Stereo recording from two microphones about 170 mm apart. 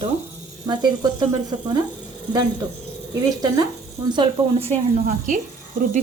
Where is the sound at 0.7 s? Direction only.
25° right (ahead or behind).